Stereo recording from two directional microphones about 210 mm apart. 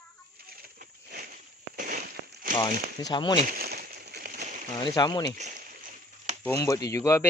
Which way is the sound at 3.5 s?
45° right (ahead or behind).